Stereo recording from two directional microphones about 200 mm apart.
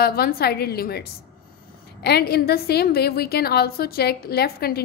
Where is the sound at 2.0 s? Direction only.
50° left (ahead or behind).